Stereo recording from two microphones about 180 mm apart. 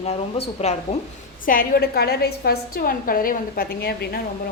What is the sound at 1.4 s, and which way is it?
A woman's voice, 55° left (ahead or behind).